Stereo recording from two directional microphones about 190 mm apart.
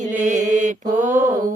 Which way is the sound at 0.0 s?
40° right (ahead or behind).